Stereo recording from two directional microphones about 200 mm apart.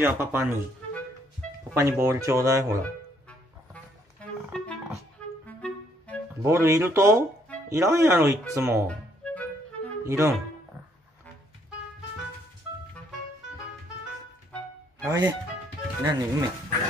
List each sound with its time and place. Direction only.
0.0 s speech: 10° right (ahead or behind)
1.7 s speech: 15° right (ahead or behind)
2.8 s music: 5° left (ahead or behind)
5.5 s clarinet: 5° left (ahead or behind)
6.4 s speech: 10° right (ahead or behind)
8.8 s music: 5° left (ahead or behind)
10.0 s speech: 15° right (ahead or behind)
15.0 s speech: 15° right (ahead or behind)